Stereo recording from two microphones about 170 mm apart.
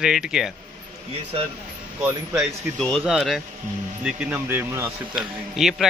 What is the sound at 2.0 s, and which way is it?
Speech, 15° right (ahead or behind).